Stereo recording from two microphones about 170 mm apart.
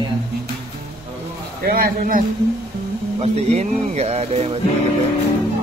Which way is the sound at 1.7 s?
60° right (ahead or behind).